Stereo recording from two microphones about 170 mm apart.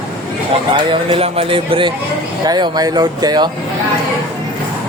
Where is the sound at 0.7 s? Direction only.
30° right (ahead or behind).